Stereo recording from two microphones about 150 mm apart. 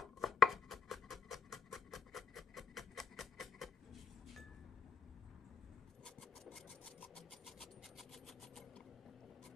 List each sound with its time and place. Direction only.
0.0 s chopping: centre (ahead or behind)
6.0 s filing: 5° left (ahead or behind)